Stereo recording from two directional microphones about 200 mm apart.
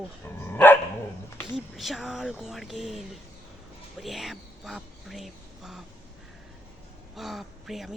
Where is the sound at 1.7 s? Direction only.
Centre (ahead or behind).